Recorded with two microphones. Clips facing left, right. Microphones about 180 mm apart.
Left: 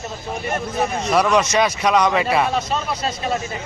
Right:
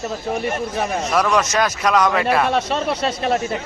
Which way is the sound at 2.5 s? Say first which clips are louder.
Right 3 dB; 70° right (ahead or behind).